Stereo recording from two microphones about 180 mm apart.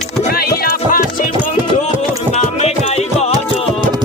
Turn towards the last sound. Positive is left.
turn(degrees=35)  # may be behind; listen again after turning